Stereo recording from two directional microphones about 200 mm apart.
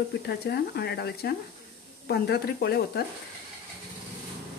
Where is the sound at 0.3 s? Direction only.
55° left (ahead or behind).